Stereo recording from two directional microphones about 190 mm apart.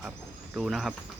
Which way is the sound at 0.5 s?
Centre (ahead or behind).